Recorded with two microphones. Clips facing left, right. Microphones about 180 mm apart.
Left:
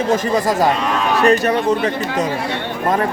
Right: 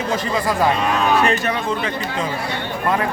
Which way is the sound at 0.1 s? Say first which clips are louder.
Left 4 dB; 40° left (ahead or behind).